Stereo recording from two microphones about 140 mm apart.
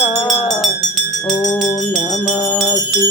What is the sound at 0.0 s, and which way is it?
Music, 35° left (ahead or behind).